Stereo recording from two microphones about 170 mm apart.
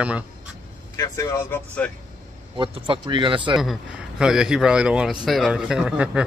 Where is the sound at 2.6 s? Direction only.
30° right (ahead or behind).